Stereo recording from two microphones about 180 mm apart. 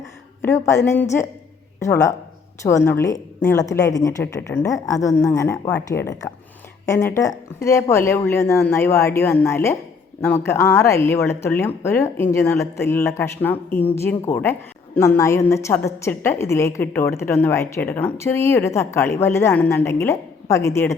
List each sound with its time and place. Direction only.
0.4 s a woman's voice: 15° left (ahead or behind)
1.8 s a woman's voice: 15° left (ahead or behind)